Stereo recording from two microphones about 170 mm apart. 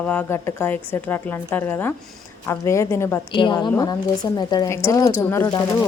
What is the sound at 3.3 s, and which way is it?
Speech, 25° left (ahead or behind).